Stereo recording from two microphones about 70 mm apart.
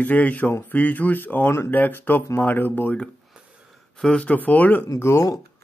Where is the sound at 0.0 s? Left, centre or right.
Left.